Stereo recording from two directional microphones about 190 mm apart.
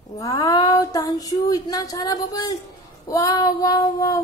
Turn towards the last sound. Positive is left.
turn(degrees=20)  # may be behind; listen again after turning